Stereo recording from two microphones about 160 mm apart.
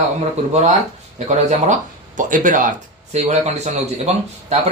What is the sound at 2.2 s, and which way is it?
A man's voice, 55° right (ahead or behind).